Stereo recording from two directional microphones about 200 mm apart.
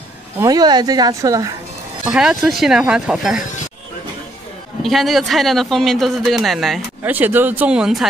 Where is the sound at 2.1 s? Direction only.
5° right (ahead or behind).